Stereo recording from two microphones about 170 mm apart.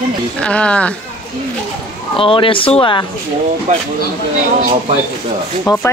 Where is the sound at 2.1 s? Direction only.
30° left (ahead or behind).